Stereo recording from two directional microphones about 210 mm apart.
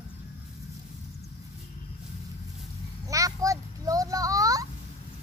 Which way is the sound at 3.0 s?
15° right (ahead or behind).